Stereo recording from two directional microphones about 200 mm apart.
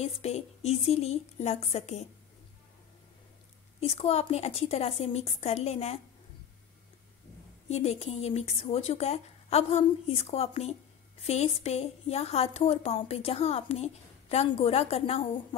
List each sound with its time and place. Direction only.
0.0 s speech: 30° left (ahead or behind)
3.8 s speech: 30° left (ahead or behind)
7.6 s speech: 35° left (ahead or behind)